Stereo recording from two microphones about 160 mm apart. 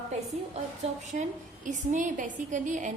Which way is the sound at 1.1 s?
50° right (ahead or behind).